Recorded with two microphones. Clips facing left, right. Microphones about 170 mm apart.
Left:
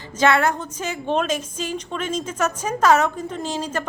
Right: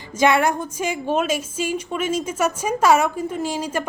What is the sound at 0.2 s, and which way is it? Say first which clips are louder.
A woman's voice: right 1 dB; 15° right (ahead or behind).